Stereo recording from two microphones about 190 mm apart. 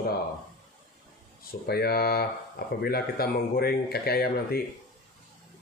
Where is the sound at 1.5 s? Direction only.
55° left (ahead or behind).